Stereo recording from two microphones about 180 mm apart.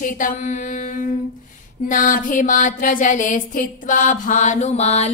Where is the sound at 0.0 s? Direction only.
45° left (ahead or behind).